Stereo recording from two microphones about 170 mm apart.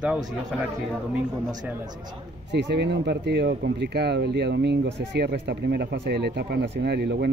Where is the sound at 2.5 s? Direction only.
90° right.